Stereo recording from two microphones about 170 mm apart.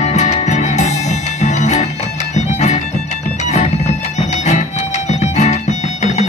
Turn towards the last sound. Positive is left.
turn(degrees=40)  # may be behind; listen again after turning